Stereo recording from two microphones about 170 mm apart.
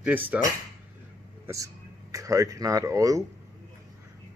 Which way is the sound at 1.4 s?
20° right (ahead or behind).